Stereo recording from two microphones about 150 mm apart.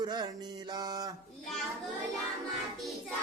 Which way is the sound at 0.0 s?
30° right (ahead or behind).